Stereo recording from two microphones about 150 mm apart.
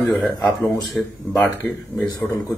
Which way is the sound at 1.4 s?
15° left (ahead or behind).